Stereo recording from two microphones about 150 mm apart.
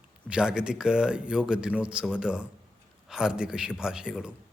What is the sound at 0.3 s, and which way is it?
Speech, 5° right (ahead or behind).